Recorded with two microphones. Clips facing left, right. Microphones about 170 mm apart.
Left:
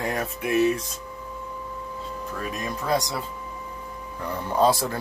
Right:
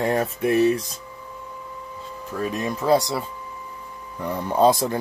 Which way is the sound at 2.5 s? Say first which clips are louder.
Right 6 dB; 30° right (ahead or behind).